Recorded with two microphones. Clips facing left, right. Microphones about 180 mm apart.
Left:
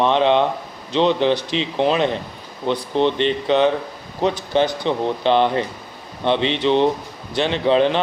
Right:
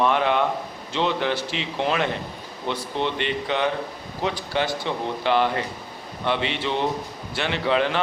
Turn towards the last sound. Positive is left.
turn(degrees=25)  # may be behind; listen again after turning